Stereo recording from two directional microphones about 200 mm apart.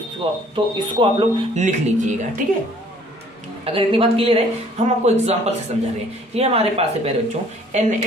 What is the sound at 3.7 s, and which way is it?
Speech, 30° right (ahead or behind).